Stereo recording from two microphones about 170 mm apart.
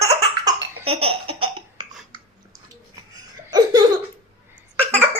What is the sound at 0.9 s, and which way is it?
Laughter, 35° right (ahead or behind).